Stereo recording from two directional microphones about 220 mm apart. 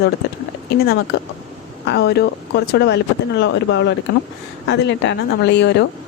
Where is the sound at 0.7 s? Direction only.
45° left (ahead or behind).